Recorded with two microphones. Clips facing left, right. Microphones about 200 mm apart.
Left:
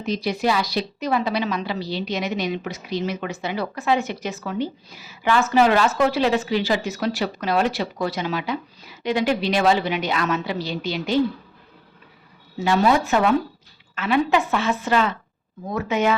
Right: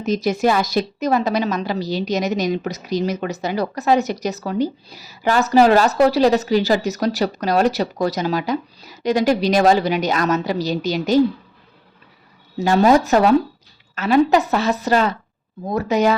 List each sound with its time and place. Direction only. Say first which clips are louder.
0.0 s a woman's voice: right 5 dB; 45° right (ahead or behind)
12.5 s a woman's voice: right 5 dB; 40° right (ahead or behind)